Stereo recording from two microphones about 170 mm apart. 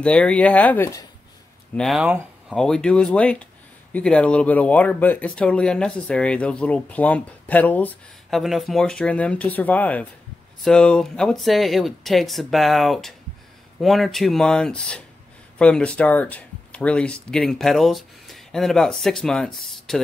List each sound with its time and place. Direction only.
0.0 s speech: 5° left (ahead or behind)
1.8 s speech: centre (ahead or behind)